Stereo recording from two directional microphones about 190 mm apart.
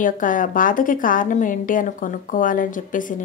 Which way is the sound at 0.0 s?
45° left (ahead or behind).